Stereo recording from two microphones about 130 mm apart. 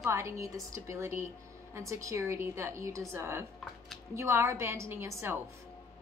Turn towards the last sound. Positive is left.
turn(degrees=-20)  # may be behind; listen again after turning